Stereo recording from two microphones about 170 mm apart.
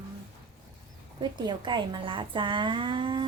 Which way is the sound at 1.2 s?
25° right (ahead or behind).